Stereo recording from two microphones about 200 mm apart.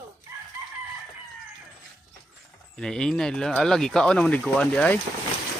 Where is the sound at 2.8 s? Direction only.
5° left (ahead or behind).